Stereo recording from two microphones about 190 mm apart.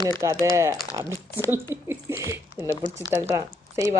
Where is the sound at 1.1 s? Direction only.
15° left (ahead or behind).